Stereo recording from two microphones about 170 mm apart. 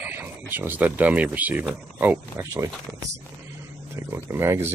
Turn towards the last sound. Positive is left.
turn(degrees=-15)  # may be behind; listen again after turning